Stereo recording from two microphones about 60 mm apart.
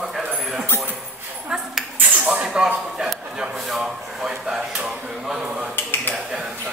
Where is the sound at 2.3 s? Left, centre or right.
Centre.